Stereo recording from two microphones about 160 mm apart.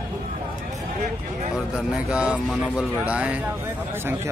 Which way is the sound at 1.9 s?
5° right (ahead or behind).